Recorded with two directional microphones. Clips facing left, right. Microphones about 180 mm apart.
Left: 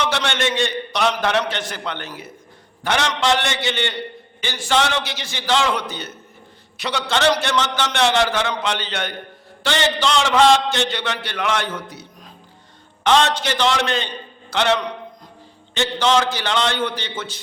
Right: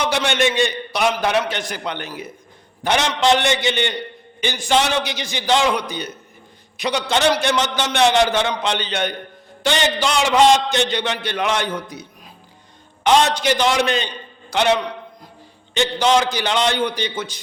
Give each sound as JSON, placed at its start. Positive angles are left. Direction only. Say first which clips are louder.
{"t": 0.0, "sound": "a man's voice", "louder": "right 3 dB", "side_deg": -15}